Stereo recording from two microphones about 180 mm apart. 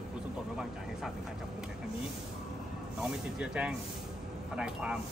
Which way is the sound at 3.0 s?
5° right (ahead or behind).